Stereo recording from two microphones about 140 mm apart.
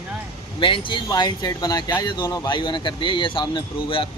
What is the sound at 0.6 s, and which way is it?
Speech, 35° left (ahead or behind).